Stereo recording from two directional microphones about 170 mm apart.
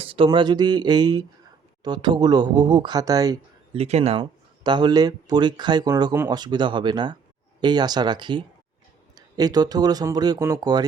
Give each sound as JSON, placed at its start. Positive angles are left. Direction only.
{"t": 0.0, "sound": "speech", "side_deg": -30}
{"t": 3.8, "sound": "speech", "side_deg": -40}